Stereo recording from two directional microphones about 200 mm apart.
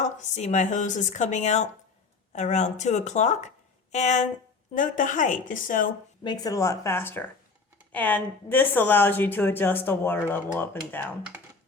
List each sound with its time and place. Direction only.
0.0 s speech: 35° left (ahead or behind)
6.2 s speech: 20° left (ahead or behind)
11.3 s a sound: 10° right (ahead or behind)